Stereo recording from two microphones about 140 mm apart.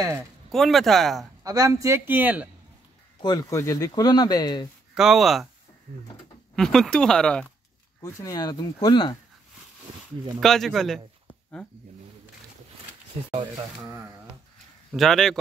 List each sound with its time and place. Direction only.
0.5 s speech: centre (ahead or behind)
1.4 s a man's voice: 25° right (ahead or behind)
3.2 s speech: 25° left (ahead or behind)
4.9 s speech: 5° right (ahead or behind)
6.5 s speech: 5° left (ahead or behind)
8.0 s speech: 25° left (ahead or behind)
10.4 s speech: 5° left (ahead or behind)
14.9 s speech: centre (ahead or behind)